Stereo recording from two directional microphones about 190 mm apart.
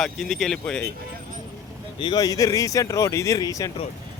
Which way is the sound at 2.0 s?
20° left (ahead or behind).